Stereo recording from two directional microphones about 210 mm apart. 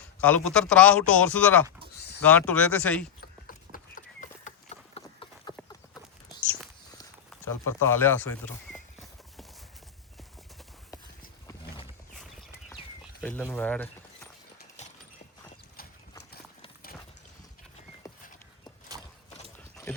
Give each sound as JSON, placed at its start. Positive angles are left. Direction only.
{"t": 0.2, "sound": "a man's voice", "side_deg": 5}
{"t": 3.2, "sound": "a sound", "side_deg": 45}
{"t": 4.9, "sound": "clip-clop", "side_deg": 25}
{"t": 7.3, "sound": "speech", "side_deg": 10}
{"t": 13.2, "sound": "speech", "side_deg": 10}
{"t": 18.0, "sound": "a sound", "side_deg": 15}
{"t": 18.9, "sound": "horse", "side_deg": -20}
{"t": 19.5, "sound": "clip-clop", "side_deg": 10}